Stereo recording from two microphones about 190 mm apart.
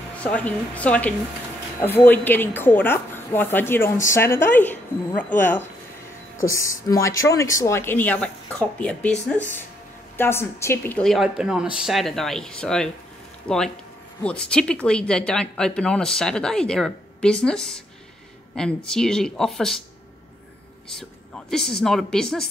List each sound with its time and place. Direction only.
0.2 s a woman's voice: 5° left (ahead or behind)
21.5 s speech: 5° left (ahead or behind)